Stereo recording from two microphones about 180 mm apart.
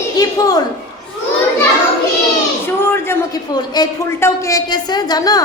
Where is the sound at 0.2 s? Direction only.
20° left (ahead or behind).